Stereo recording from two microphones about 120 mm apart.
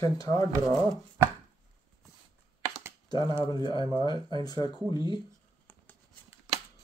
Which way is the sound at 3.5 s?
40° left (ahead or behind).